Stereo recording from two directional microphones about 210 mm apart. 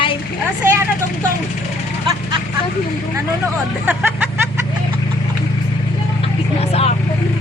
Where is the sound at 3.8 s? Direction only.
10° right (ahead or behind).